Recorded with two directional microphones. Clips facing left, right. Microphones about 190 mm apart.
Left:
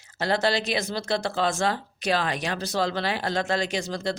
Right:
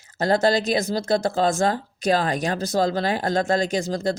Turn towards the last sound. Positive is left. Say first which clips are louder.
# right 5 dB
turn(degrees=-45)  # may be behind; listen again after turning